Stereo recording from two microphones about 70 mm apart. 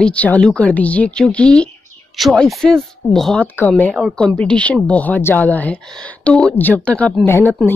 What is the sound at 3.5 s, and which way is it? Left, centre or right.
Speech, left.